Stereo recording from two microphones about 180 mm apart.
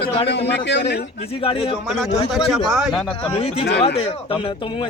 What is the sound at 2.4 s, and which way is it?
Speech, centre (ahead or behind).